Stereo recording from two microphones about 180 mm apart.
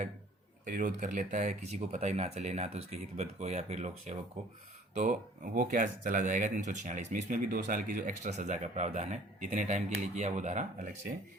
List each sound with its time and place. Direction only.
0.6 s speech: 45° right (ahead or behind)